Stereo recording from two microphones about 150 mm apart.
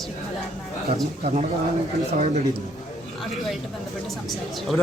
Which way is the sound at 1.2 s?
50° right (ahead or behind).